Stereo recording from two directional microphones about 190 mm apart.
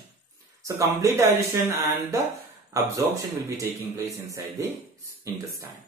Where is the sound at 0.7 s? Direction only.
15° right (ahead or behind).